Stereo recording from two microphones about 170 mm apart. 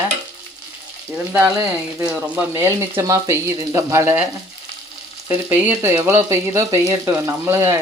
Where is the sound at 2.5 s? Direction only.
15° right (ahead or behind).